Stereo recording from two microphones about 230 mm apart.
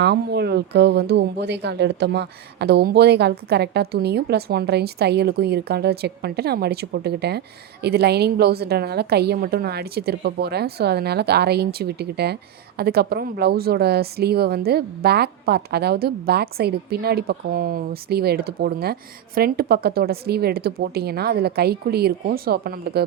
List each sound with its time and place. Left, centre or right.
0.0 s speech: right